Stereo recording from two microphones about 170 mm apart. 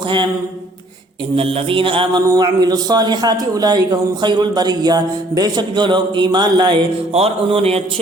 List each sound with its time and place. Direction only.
1.4 s music: 35° right (ahead or behind)
2.2 s a man's voice: 20° right (ahead or behind)
7.1 s music: 35° right (ahead or behind)